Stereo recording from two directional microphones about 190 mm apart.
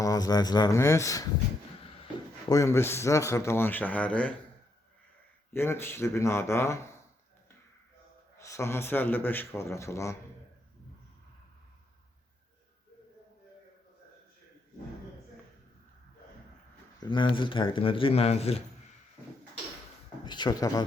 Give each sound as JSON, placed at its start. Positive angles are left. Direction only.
{"t": 0.0, "sound": "speech", "side_deg": 20}
{"t": 2.5, "sound": "speech", "side_deg": 15}
{"t": 5.5, "sound": "speech", "side_deg": 10}
{"t": 8.4, "sound": "speech", "side_deg": 15}
{"t": 17.0, "sound": "speech", "side_deg": 25}
{"t": 20.2, "sound": "speech", "side_deg": 20}